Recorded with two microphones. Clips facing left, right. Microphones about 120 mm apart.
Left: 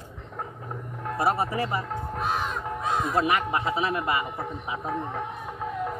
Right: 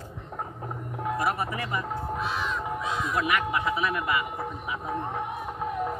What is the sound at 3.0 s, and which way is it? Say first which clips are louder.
A man's voice: left 2 dB; 30° left (ahead or behind).